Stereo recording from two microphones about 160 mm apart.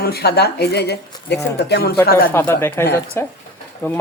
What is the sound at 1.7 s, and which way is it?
Speech, 80° left.